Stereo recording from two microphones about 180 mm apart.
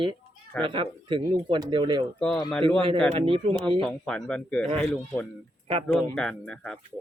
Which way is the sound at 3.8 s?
5° left (ahead or behind).